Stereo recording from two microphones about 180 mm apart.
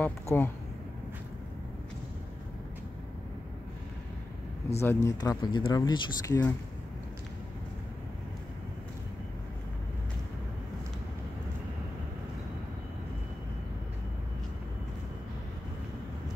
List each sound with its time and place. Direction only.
0.0 s speech: 10° left (ahead or behind)
4.7 s speech: 15° left (ahead or behind)